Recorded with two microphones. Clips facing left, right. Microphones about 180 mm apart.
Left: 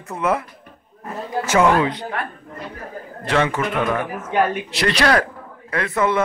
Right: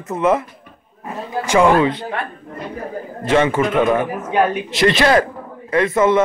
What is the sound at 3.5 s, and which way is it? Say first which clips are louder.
A man's voice: right 6 dB; 20° right (ahead or behind).